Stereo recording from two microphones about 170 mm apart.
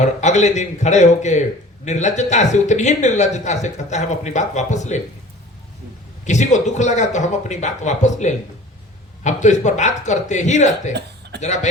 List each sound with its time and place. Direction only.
0.0 s a man's voice: 45° left (ahead or behind)
6.2 s a man's voice: 45° left (ahead or behind)